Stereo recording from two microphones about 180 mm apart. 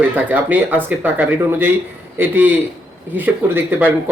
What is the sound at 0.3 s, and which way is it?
Speech, 10° right (ahead or behind).